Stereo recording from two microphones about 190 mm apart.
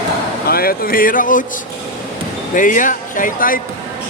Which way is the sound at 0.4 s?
50° left (ahead or behind).